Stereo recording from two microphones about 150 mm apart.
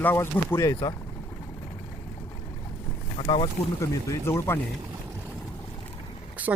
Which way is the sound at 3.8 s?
20° left (ahead or behind).